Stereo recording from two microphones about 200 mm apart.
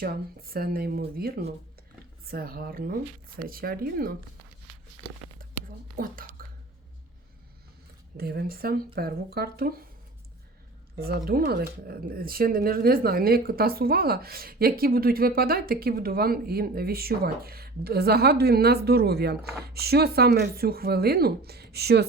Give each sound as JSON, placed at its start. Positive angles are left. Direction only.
{"t": 0.0, "sound": "a woman's voice", "side_deg": -50}
{"t": 5.4, "sound": "a sound", "side_deg": -45}
{"t": 8.1, "sound": "a woman's voice", "side_deg": -50}
{"t": 11.3, "sound": "a woman's voice", "side_deg": -50}